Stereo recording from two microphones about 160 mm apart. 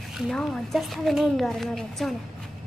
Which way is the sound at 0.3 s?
Centre (ahead or behind).